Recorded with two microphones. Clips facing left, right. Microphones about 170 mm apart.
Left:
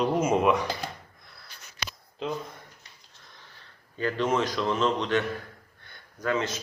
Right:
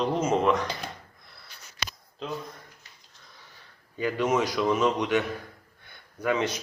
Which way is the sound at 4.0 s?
10° right (ahead or behind).